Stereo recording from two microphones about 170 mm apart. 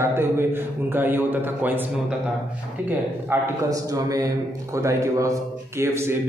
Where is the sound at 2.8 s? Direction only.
15° right (ahead or behind).